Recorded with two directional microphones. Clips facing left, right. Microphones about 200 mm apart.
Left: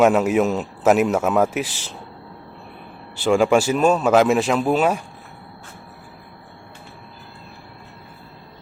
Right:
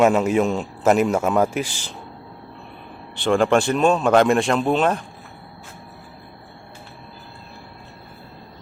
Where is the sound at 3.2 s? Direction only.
5° left (ahead or behind).